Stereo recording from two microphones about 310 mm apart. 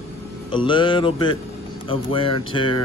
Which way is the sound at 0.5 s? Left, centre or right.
Centre.